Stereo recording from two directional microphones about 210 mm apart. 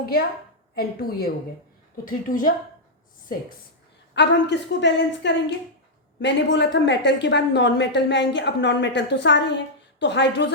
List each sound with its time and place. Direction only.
0.0 s a woman's voice: 45° left (ahead or behind)
4.1 s a woman's voice: 55° left (ahead or behind)